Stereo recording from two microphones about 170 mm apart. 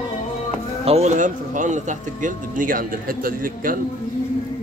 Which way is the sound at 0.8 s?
40° right (ahead or behind).